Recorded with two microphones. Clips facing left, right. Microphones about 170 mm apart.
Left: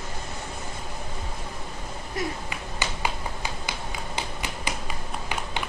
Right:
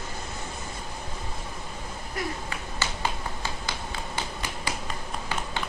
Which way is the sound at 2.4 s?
15° left (ahead or behind).